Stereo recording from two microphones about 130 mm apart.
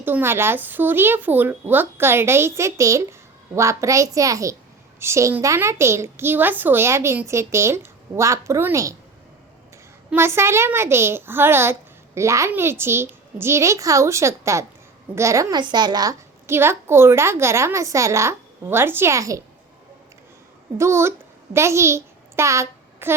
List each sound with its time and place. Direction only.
0.0 s speech: 15° right (ahead or behind)
10.1 s a woman's voice: 20° right (ahead or behind)
16.5 s speech: 20° right (ahead or behind)
20.7 s a child's voice: 20° right (ahead or behind)